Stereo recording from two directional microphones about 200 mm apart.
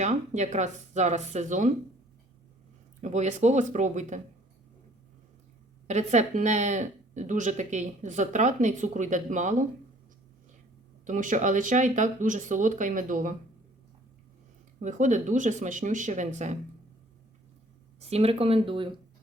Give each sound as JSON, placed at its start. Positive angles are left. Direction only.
{"t": 0.0, "sound": "speech", "side_deg": -35}
{"t": 3.0, "sound": "speech", "side_deg": -35}
{"t": 5.9, "sound": "speech", "side_deg": -35}
{"t": 11.0, "sound": "speech", "side_deg": -40}
{"t": 14.8, "sound": "speech", "side_deg": -40}
{"t": 18.1, "sound": "speech", "side_deg": -30}